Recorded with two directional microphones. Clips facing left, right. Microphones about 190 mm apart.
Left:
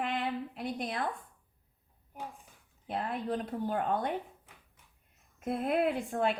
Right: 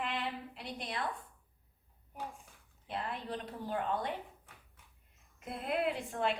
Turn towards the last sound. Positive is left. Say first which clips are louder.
# left 4 dB
turn(degrees=50)  # may be behind; listen again after turning